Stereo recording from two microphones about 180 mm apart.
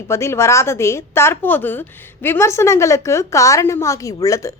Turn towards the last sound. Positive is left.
turn(degrees=20)  # may be behind; listen again after turning